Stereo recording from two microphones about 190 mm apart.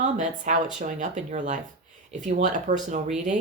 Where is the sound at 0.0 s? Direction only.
40° right (ahead or behind).